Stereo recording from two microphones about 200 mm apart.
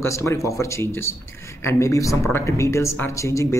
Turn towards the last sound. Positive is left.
turn(degrees=15)  # may be behind; listen again after turning